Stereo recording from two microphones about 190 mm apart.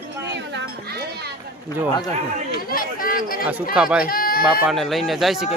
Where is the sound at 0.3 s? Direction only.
65° right (ahead or behind).